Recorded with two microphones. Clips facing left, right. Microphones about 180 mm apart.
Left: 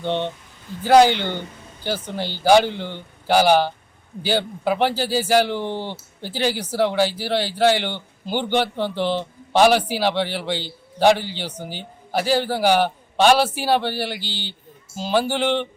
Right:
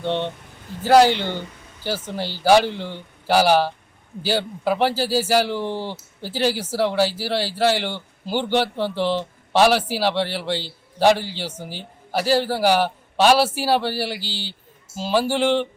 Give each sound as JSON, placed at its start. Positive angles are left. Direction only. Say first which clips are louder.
{"t": 0.0, "sound": "a man's voice", "louder": "even", "side_deg": 0}